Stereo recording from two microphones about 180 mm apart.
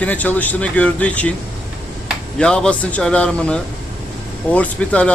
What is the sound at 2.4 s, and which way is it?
A man's voice, 5° left (ahead or behind).